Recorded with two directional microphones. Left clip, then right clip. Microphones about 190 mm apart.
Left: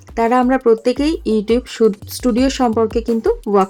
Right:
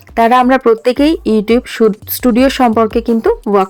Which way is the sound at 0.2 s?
20° right (ahead or behind).